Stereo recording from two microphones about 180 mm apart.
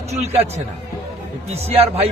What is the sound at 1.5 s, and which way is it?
Speech, 35° right (ahead or behind).